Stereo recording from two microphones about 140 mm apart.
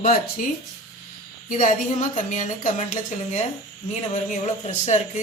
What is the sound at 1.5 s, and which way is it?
A woman's voice, 70° left (ahead or behind).